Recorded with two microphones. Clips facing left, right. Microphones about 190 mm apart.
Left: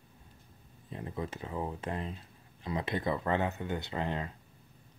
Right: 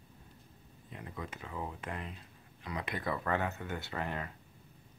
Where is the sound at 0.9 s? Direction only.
30° left (ahead or behind).